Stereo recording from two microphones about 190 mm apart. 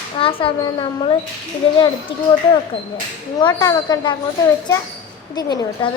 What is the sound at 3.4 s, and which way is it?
Speech, 20° left (ahead or behind).